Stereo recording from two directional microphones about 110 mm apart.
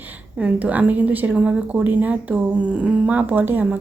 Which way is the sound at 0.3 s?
15° right (ahead or behind).